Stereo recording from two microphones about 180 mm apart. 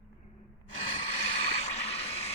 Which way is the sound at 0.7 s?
35° left (ahead or behind).